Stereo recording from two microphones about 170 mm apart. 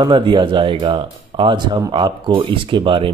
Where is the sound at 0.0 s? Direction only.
25° right (ahead or behind).